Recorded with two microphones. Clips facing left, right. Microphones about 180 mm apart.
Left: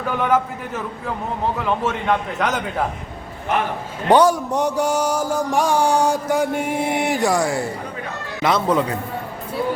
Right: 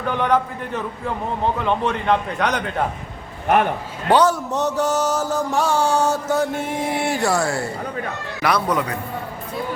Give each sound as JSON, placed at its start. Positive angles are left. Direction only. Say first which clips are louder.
{"t": 0.2, "sound": "a man's voice", "louder": "left 1 dB", "side_deg": 5}
{"t": 4.1, "sound": "a sound", "louder": "left 2 dB", "side_deg": 10}
{"t": 8.4, "sound": "a man's voice", "louder": "left 2 dB", "side_deg": 20}